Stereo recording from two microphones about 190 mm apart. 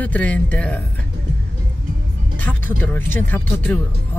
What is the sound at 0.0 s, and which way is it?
Speech, 10° left (ahead or behind).